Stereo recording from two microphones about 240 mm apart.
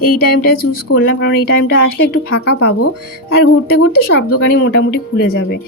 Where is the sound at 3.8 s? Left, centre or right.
Left.